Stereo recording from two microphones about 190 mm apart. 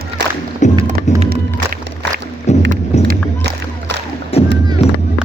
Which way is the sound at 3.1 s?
60° right (ahead or behind).